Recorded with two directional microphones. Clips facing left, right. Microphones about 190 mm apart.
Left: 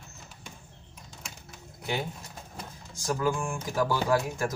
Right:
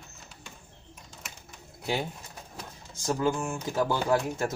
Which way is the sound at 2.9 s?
25° right (ahead or behind).